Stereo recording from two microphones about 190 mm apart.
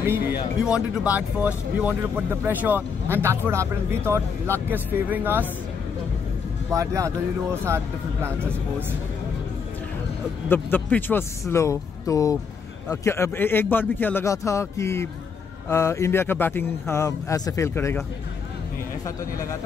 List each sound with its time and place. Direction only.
0.7 s speech: 5° right (ahead or behind)
6.7 s speech: 15° right (ahead or behind)
10.5 s a man's voice: 10° left (ahead or behind)